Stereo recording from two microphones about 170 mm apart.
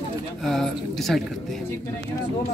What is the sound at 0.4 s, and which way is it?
Speech, centre (ahead or behind).